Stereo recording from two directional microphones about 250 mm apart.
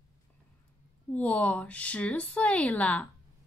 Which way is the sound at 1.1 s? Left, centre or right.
Centre.